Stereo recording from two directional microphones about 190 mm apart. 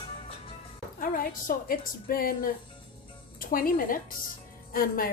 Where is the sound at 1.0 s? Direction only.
50° left (ahead or behind).